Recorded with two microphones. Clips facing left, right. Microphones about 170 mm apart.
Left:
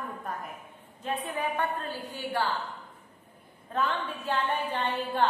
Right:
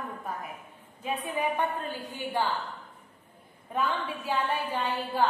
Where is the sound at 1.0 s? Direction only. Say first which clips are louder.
Right 1 dB; 10° right (ahead or behind).